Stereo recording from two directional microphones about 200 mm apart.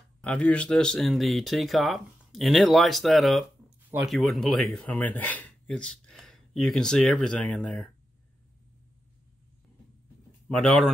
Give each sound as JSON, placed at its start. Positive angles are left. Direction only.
{"t": 0.2, "sound": "speech", "side_deg": 5}
{"t": 10.5, "sound": "speech", "side_deg": 5}